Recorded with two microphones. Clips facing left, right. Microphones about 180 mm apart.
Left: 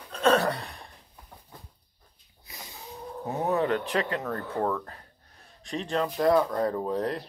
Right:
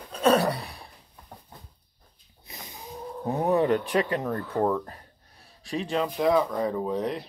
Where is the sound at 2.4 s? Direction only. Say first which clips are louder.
Right 2 dB; 20° right (ahead or behind).